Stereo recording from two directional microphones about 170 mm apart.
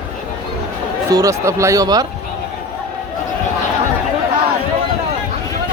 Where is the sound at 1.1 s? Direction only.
20° right (ahead or behind).